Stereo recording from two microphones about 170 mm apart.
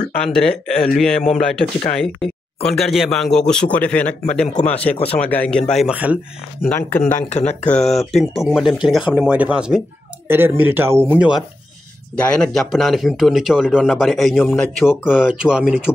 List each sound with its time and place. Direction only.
0.2 s a man's voice: 5° left (ahead or behind)
4.9 s speech: 35° left (ahead or behind)
5.2 s a man's voice: 10° left (ahead or behind)
6.6 s speech: 5° left (ahead or behind)
7.2 s speech: 40° left (ahead or behind)
8.0 s a man's voice: centre (ahead or behind); by 11.1 s 15° right (ahead or behind)
12.2 s a man's voice: 5° left (ahead or behind)